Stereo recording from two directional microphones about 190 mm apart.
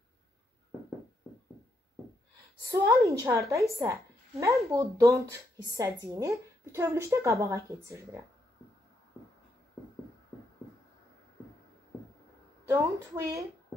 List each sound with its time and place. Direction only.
2.6 s a woman's voice: 15° right (ahead or behind)
12.6 s a woman's voice: 15° right (ahead or behind)